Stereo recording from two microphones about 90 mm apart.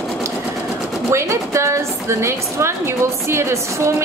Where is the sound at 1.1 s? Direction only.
30° right (ahead or behind).